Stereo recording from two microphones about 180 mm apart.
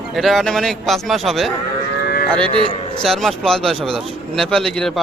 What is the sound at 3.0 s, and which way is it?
Speech, centre (ahead or behind).